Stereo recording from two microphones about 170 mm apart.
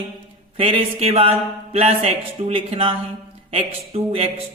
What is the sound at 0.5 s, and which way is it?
A man's voice, 30° right (ahead or behind).